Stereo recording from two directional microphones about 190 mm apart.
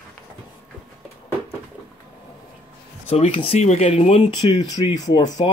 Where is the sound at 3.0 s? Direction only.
35° left (ahead or behind).